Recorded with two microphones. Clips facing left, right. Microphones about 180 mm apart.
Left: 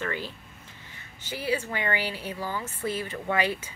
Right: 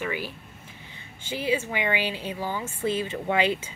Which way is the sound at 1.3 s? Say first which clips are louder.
Right 3 dB; 20° right (ahead or behind).